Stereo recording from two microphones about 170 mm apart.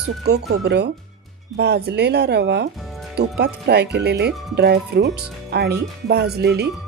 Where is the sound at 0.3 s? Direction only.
75° right (ahead or behind).